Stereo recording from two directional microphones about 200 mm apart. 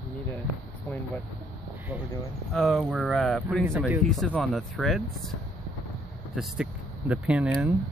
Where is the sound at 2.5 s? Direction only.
Centre (ahead or behind).